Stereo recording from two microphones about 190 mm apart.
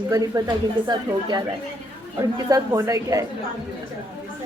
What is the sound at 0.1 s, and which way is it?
Speech, 20° right (ahead or behind).